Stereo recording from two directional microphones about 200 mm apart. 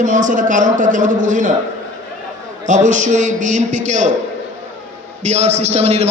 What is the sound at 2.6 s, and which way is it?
A man's voice, 40° right (ahead or behind).